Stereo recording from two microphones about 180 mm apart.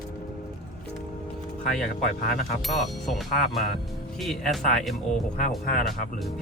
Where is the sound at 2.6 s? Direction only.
Centre (ahead or behind).